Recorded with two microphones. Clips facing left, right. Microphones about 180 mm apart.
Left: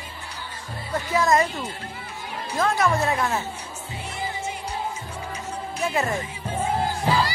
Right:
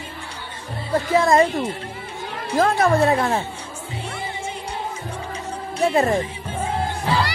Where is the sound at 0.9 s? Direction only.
30° right (ahead or behind).